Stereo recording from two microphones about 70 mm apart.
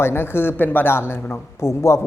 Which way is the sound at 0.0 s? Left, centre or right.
Left.